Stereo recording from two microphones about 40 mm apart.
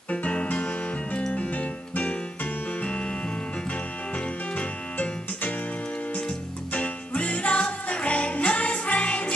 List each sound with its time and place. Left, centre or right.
0.1 s music: left
4.6 s music: left
6.7 s music: left